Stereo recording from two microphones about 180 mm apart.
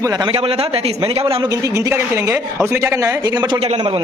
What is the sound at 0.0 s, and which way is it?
A man's voice, 20° right (ahead or behind).